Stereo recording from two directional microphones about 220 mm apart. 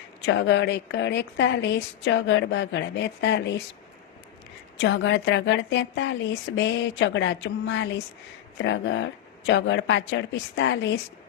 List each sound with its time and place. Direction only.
0.3 s a woman's voice: 55° left (ahead or behind)
4.8 s a woman's voice: 55° left (ahead or behind)